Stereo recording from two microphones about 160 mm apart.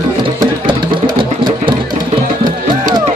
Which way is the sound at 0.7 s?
30° right (ahead or behind).